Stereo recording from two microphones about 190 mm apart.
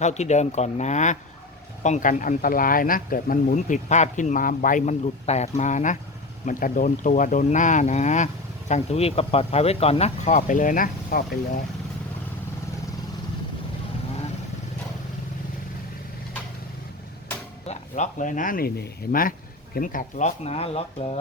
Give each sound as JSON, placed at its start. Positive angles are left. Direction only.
{"t": 0.0, "sound": "speech", "side_deg": 35}
{"t": 17.7, "sound": "speech", "side_deg": 40}